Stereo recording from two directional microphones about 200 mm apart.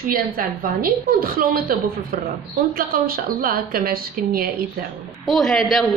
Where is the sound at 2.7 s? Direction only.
45° right (ahead or behind).